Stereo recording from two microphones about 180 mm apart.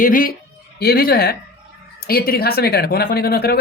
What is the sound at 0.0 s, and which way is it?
Speech, 50° left (ahead or behind).